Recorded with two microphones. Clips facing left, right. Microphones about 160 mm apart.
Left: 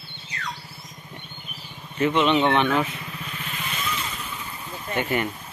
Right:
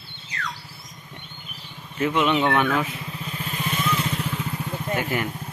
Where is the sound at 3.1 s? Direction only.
35° right (ahead or behind).